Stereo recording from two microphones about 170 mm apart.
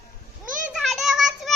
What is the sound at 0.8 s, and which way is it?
Child singing, centre (ahead or behind).